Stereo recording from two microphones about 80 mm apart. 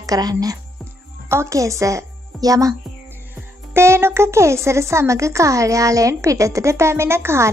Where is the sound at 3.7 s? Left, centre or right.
Right.